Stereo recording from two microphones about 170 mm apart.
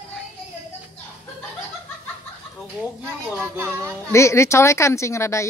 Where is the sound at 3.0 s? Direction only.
15° right (ahead or behind).